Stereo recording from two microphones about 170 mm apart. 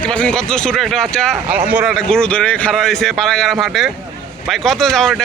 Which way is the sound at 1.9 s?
5° left (ahead or behind).